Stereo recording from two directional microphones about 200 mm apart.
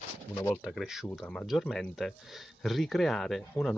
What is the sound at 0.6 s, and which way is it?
Speech, centre (ahead or behind).